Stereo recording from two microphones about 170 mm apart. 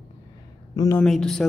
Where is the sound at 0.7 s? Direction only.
20° left (ahead or behind).